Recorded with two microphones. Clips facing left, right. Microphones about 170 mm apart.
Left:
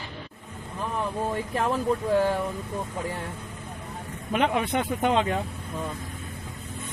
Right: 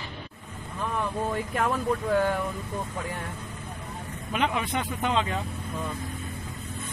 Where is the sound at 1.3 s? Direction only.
25° left (ahead or behind).